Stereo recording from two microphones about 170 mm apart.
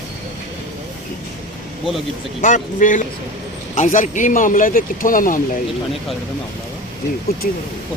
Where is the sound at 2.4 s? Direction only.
50° left (ahead or behind).